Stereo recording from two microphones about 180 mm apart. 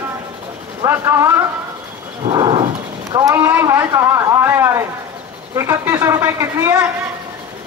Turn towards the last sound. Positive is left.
turn(degrees=-15)  # may be behind; listen again after turning